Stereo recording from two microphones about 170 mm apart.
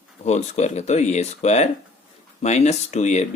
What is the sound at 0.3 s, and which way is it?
Speech, 40° left (ahead or behind).